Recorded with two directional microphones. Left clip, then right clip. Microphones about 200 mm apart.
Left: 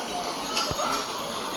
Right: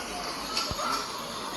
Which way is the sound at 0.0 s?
5° right (ahead or behind).